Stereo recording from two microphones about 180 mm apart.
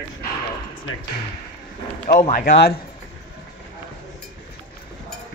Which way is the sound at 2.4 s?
65° left (ahead or behind).